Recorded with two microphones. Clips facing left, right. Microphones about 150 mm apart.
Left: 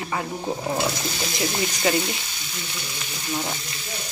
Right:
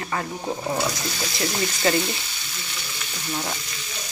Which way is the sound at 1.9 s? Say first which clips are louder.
Right 1 dB; 10° left (ahead or behind).